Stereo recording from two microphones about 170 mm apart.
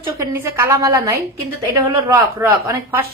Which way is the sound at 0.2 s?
15° right (ahead or behind).